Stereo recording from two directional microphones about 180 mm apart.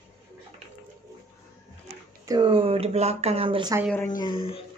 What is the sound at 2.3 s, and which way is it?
Speech, 25° right (ahead or behind).